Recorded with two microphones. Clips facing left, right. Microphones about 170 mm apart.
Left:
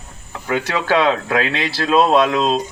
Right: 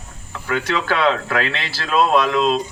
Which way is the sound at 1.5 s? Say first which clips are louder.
Left 5 dB; 25° left (ahead or behind).